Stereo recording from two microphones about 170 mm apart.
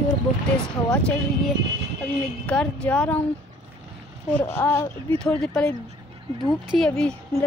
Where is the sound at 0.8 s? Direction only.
5° left (ahead or behind).